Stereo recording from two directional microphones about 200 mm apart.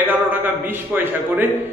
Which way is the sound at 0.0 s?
10° right (ahead or behind).